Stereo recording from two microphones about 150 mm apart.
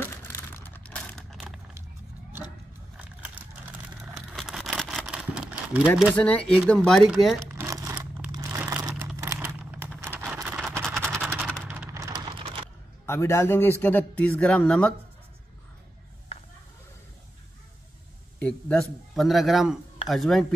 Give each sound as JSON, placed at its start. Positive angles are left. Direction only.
{"t": 0.0, "sound": "a sound", "side_deg": 15}
{"t": 3.0, "sound": "a sound", "side_deg": -10}
{"t": 6.1, "sound": "a man's voice", "side_deg": 10}
{"t": 7.4, "sound": "crumpling", "side_deg": -20}
{"t": 10.2, "sound": "vehicle", "side_deg": -5}
{"t": 11.1, "sound": "typing", "side_deg": -10}
{"t": 11.6, "sound": "a sound", "side_deg": -10}
{"t": 11.9, "sound": "typing", "side_deg": -25}
{"t": 13.0, "sound": "speech", "side_deg": 15}
{"t": 18.4, "sound": "a man's voice", "side_deg": 10}